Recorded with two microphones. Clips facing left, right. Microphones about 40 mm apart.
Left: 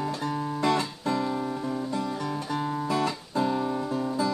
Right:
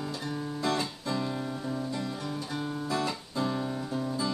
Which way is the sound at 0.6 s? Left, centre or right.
Left.